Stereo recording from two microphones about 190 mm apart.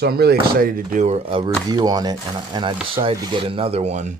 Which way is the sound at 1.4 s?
20° right (ahead or behind).